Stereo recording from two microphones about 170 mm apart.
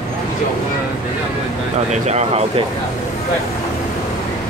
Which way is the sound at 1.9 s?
40° right (ahead or behind).